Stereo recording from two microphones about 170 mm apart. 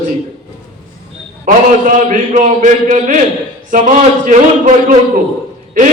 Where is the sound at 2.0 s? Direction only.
50° right (ahead or behind).